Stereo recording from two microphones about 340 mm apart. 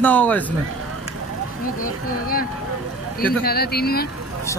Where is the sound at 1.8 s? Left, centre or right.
Left.